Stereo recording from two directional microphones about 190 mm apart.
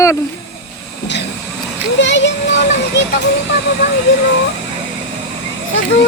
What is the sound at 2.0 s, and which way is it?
Speech, 65° left (ahead or behind).